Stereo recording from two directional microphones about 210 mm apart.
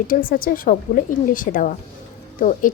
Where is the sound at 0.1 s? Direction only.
45° left (ahead or behind).